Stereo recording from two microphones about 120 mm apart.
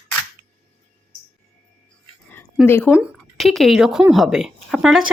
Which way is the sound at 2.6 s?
20° left (ahead or behind).